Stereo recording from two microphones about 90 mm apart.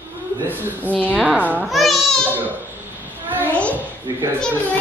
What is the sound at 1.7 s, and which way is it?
Speech, centre (ahead or behind).